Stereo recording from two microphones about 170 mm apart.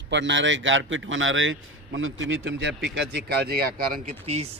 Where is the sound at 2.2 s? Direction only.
90° right; by 4.0 s 60° right (ahead or behind).